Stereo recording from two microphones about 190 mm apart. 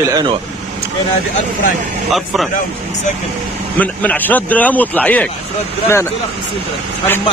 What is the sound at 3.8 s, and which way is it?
A man's voice, 10° left (ahead or behind).